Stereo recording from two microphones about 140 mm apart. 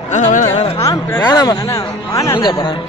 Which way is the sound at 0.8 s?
25° left (ahead or behind).